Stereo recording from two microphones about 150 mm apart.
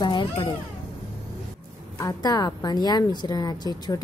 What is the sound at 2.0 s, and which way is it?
A woman's voice, 25° left (ahead or behind).